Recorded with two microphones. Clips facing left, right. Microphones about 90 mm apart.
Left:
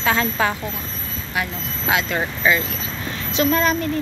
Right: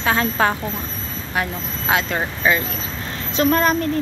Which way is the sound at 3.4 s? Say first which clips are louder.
Right 2 dB; 45° right (ahead or behind).